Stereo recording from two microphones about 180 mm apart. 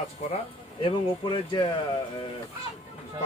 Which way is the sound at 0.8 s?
25° left (ahead or behind).